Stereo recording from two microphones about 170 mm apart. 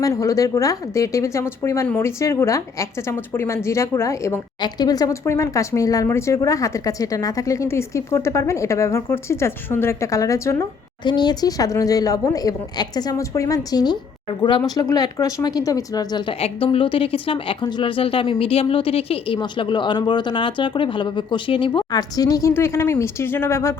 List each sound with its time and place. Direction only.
0.0 s a woman's voice: 20° left (ahead or behind)
16.4 s speech: 35° left (ahead or behind); by 23.7 s 15° left (ahead or behind)